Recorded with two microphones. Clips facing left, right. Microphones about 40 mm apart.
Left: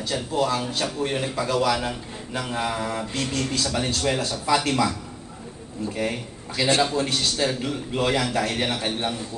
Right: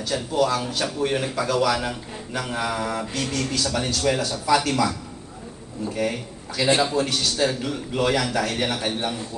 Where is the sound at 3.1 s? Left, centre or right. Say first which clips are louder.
Even; left.